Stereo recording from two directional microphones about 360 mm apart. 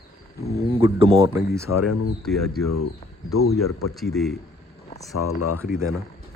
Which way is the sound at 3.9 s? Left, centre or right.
Centre.